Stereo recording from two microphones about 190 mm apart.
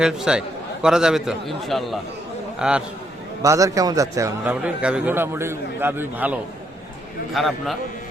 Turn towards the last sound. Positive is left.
turn(degrees=0)  # may be behind; listen again after turning